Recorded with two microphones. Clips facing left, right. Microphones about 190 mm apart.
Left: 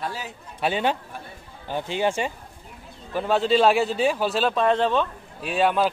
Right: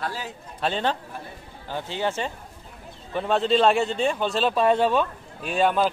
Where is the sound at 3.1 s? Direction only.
Centre (ahead or behind).